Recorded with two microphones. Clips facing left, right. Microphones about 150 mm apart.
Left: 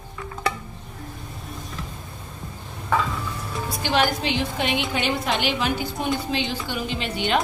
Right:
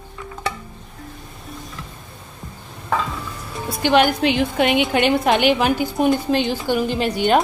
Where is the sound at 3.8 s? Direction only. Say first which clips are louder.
Right 7 dB; 60° right (ahead or behind).